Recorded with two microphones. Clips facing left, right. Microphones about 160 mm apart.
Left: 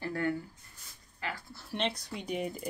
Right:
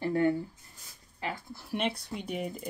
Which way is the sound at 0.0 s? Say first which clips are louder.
Right 6 dB; 25° right (ahead or behind).